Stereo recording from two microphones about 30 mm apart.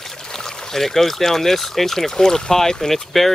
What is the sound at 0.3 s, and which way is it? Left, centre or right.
Speech, left.